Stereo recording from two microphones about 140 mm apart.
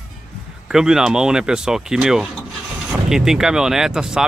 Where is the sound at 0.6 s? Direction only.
5° right (ahead or behind).